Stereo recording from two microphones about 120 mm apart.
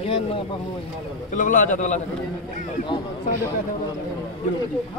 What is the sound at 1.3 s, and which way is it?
Speech, 90° left.